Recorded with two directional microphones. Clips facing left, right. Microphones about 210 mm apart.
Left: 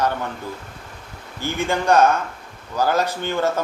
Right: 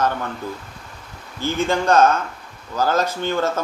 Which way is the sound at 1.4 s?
15° left (ahead or behind).